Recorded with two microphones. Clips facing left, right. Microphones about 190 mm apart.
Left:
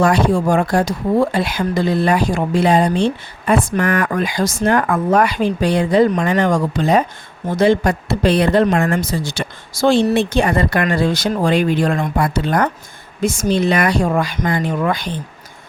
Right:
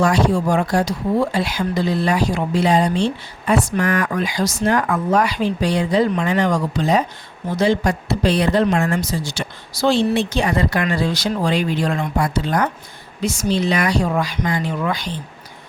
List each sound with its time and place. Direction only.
0.0 s speech: 55° left (ahead or behind)